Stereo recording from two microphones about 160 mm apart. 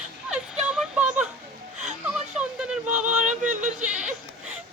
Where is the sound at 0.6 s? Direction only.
5° right (ahead or behind).